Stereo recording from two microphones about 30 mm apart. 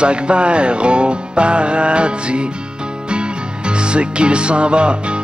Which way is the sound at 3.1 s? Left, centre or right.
Right.